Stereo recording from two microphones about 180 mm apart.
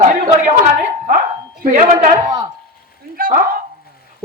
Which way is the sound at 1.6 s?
45° right (ahead or behind).